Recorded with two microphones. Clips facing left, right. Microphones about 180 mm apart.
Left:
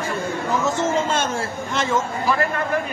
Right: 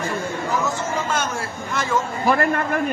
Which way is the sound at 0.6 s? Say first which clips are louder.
Left 4 dB; 25° left (ahead or behind).